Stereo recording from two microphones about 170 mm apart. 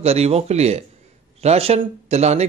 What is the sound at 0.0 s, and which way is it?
Speech, 35° right (ahead or behind).